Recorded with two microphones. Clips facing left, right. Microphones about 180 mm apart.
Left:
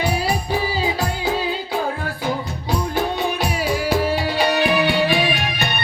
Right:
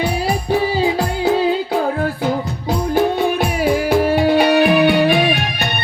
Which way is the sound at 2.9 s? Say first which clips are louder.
Right 9 dB; 50° right (ahead or behind).